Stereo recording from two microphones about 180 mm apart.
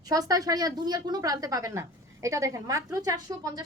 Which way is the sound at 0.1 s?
20° right (ahead or behind).